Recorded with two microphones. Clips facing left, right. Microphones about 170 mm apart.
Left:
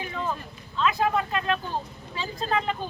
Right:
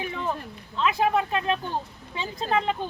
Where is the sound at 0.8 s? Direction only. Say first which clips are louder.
Right 1 dB; 20° right (ahead or behind).